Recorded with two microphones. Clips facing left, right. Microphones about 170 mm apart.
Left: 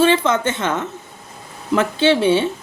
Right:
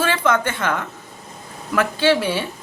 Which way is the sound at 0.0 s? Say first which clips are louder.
Left 4 dB; 25° left (ahead or behind).